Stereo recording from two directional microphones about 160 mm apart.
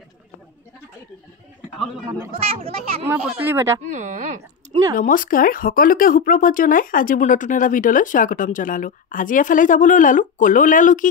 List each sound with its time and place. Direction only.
2.0 s speech: 15° right (ahead or behind)
2.5 s speech: 40° right (ahead or behind)
3.1 s speech: 15° right (ahead or behind)
3.9 s speech: 50° right (ahead or behind)
4.9 s speech: 55° left (ahead or behind)